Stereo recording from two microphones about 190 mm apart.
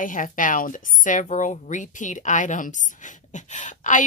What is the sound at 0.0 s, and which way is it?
A woman's voice, 45° left (ahead or behind).